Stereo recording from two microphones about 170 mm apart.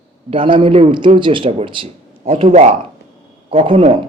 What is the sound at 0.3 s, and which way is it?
A man's voice, 30° right (ahead or behind).